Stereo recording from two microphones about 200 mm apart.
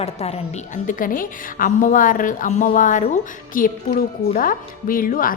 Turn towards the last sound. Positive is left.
turn(degrees=45)  # may be behind; listen again after turning